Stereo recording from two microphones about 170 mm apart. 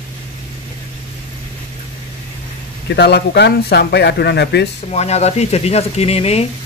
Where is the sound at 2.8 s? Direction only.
85° left.